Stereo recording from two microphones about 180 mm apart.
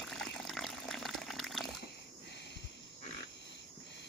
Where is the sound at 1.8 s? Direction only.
70° left (ahead or behind).